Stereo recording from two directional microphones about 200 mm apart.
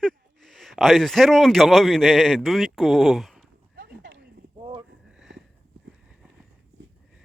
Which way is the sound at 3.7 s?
60° right (ahead or behind).